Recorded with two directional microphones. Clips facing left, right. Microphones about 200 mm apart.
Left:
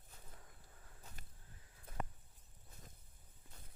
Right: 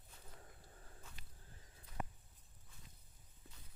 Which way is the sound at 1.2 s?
50° left (ahead or behind).